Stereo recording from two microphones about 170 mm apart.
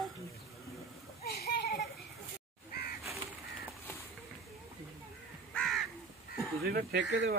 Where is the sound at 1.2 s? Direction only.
65° left (ahead or behind).